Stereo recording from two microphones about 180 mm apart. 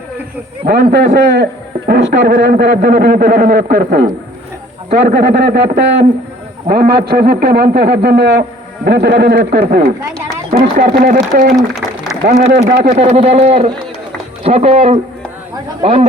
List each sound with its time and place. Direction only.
0.7 s a man's voice: 65° right (ahead or behind)
10.6 s speech: 50° right (ahead or behind)
11.5 s a sound: centre (ahead or behind)
12.2 s a man's voice: 60° right (ahead or behind)
12.9 s a man's voice: 40° right (ahead or behind)